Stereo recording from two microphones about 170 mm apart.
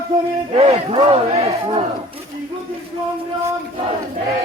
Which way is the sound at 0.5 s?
35° right (ahead or behind).